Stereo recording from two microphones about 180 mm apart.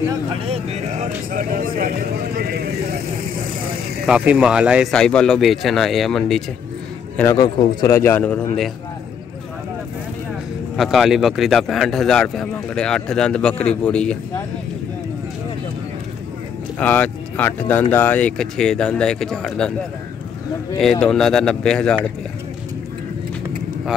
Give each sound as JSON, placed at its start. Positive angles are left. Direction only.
{"t": 0.1, "sound": "speech", "side_deg": -30}
{"t": 2.3, "sound": "vehicle", "side_deg": -60}
{"t": 4.0, "sound": "a man's voice", "side_deg": -5}
{"t": 7.2, "sound": "a man's voice", "side_deg": 20}
{"t": 10.8, "sound": "a man's voice", "side_deg": 0}
{"t": 16.8, "sound": "a man's voice", "side_deg": 10}
{"t": 21.0, "sound": "a man's voice", "side_deg": 0}